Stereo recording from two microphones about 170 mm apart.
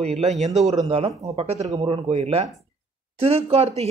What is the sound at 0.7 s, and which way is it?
Speech, 30° right (ahead or behind).